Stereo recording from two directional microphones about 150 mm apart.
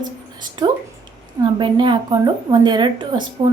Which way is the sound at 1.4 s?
30° right (ahead or behind).